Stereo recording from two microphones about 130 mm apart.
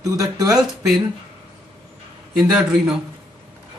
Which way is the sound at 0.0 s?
25° right (ahead or behind).